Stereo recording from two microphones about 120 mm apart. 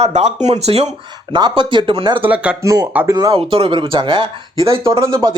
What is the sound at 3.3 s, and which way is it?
Speech, 50° right (ahead or behind).